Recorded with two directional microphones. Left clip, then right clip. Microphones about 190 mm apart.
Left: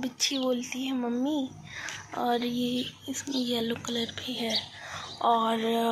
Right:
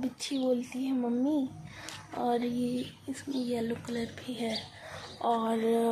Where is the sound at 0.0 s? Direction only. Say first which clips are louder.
Left 4 dB; 5° right (ahead or behind).